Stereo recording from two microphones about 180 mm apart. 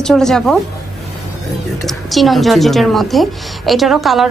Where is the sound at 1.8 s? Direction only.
Centre (ahead or behind).